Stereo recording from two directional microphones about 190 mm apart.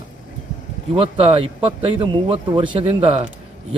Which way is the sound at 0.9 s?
30° right (ahead or behind).